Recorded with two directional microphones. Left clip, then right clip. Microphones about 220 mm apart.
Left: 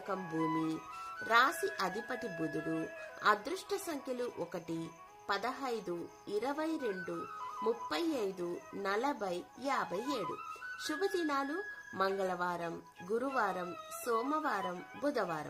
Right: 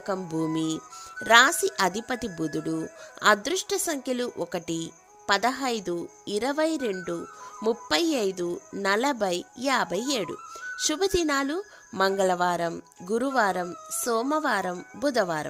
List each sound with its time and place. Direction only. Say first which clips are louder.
0.1 s speech: right 7 dB; 45° right (ahead or behind)